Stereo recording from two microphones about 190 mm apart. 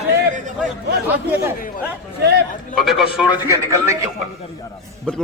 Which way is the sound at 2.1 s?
60° right (ahead or behind).